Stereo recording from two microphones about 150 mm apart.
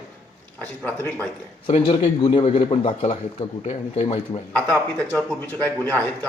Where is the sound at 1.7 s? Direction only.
45° left (ahead or behind).